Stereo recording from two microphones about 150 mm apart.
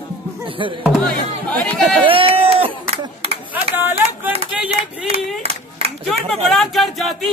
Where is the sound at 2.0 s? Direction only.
35° right (ahead or behind).